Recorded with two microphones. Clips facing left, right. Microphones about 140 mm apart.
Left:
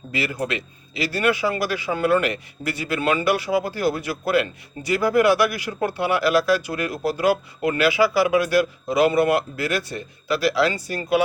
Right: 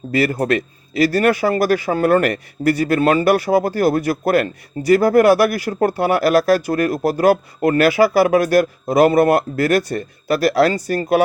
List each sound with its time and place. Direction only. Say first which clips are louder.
0.1 s a man's voice: right 9 dB; 45° right (ahead or behind)